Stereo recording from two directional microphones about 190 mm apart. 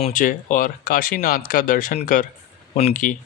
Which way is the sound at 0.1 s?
45° left (ahead or behind).